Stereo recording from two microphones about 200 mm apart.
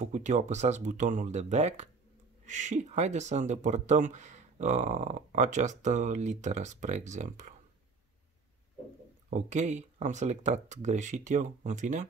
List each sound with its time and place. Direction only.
0.0 s speech: 35° right (ahead or behind)
9.3 s speech: 35° right (ahead or behind)